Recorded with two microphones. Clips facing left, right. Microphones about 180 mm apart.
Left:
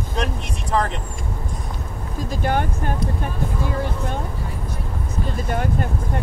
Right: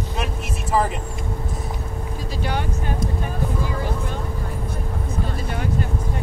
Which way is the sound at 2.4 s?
50° left (ahead or behind).